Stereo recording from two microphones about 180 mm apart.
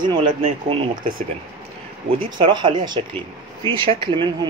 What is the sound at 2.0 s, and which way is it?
Speech, 30° right (ahead or behind).